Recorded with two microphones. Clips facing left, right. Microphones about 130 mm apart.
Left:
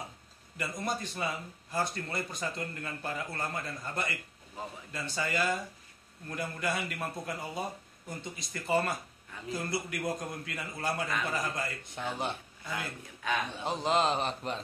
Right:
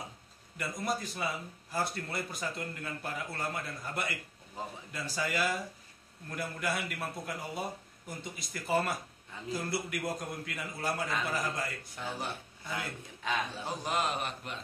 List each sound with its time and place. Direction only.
0.6 s a man's voice: centre (ahead or behind)
11.8 s a man's voice: 20° left (ahead or behind)